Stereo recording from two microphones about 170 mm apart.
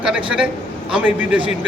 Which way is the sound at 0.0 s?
5° right (ahead or behind).